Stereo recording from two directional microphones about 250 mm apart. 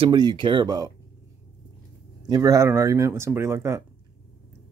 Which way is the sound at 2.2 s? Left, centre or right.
Centre.